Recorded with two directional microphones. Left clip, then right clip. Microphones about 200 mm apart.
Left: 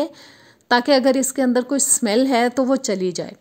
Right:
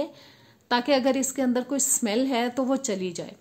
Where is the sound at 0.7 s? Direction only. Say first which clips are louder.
Left 7 dB; 40° left (ahead or behind).